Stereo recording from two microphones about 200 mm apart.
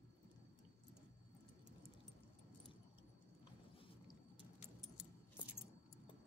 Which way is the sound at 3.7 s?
25° left (ahead or behind).